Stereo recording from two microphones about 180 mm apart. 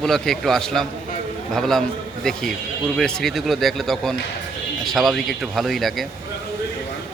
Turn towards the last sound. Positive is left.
turn(degrees=0)  # may be behind; listen again after turning